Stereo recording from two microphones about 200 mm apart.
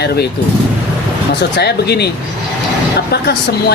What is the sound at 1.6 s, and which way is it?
Speech, 55° left (ahead or behind).